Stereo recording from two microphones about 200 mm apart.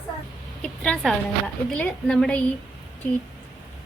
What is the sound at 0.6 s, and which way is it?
A woman's voice, 5° left (ahead or behind).